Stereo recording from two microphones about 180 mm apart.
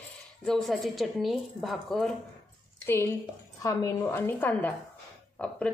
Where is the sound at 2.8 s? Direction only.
15° left (ahead or behind).